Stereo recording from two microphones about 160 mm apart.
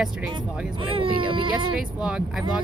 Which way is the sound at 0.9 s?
35° right (ahead or behind).